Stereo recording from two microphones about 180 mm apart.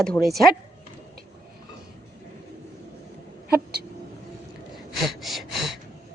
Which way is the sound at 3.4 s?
60° right (ahead or behind).